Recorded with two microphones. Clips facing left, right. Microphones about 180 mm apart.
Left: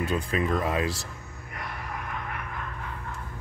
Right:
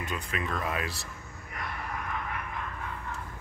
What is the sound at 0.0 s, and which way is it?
Speech, 30° left (ahead or behind).